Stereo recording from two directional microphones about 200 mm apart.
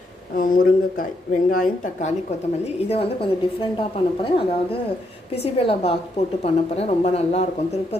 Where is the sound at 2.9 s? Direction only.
30° left (ahead or behind).